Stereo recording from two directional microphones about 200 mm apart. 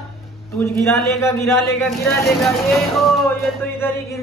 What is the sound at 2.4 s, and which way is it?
Speech, centre (ahead or behind).